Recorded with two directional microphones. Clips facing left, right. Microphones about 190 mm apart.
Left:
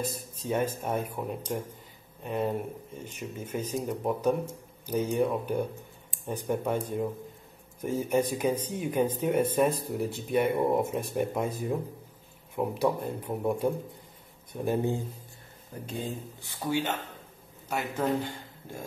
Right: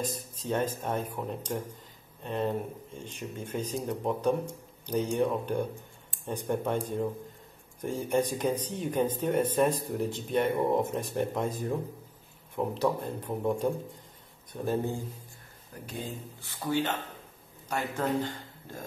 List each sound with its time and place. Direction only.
0.0 s speech: 10° left (ahead or behind)
7.8 s a man's voice: 10° left (ahead or behind)